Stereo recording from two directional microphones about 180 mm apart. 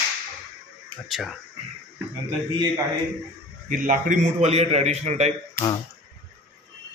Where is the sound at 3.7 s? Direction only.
50° right (ahead or behind).